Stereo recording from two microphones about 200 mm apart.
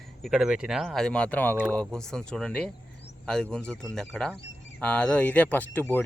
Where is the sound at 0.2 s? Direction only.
Centre (ahead or behind).